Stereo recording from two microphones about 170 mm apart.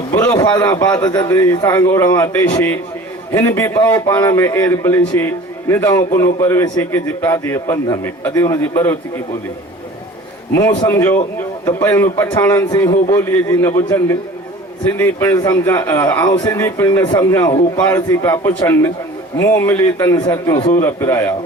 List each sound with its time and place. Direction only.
0.2 s a man's voice: 15° left (ahead or behind)
10.5 s a man's voice: 20° left (ahead or behind)
17.7 s a man's voice: 10° left (ahead or behind)